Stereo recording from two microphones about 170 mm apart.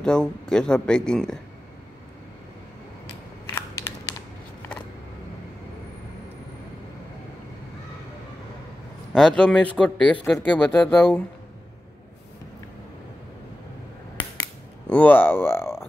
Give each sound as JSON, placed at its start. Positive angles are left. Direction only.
{"t": 0.0, "sound": "speech", "side_deg": 5}
{"t": 3.5, "sound": "crushing", "side_deg": 20}
{"t": 9.1, "sound": "speech", "side_deg": 5}
{"t": 14.9, "sound": "speech", "side_deg": 10}